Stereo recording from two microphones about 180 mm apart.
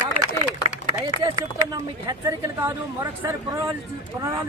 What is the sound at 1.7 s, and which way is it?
Speech, 20° right (ahead or behind).